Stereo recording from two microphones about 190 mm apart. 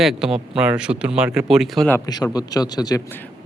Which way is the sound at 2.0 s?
20° left (ahead or behind).